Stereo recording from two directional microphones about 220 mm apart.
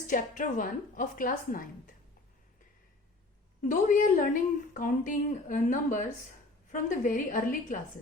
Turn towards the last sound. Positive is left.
turn(degrees=35)  # may be behind; listen again after turning